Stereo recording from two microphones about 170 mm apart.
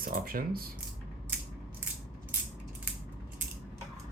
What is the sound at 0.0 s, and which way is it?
Speech, 60° right (ahead or behind).